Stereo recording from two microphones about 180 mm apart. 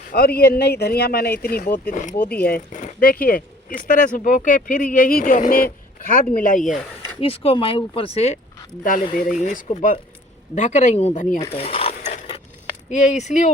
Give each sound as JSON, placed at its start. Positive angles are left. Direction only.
{"t": 0.1, "sound": "speech", "side_deg": 60}
{"t": 1.8, "sound": "speech", "side_deg": 45}
{"t": 7.2, "sound": "speech", "side_deg": 30}
{"t": 9.1, "sound": "speech", "side_deg": 45}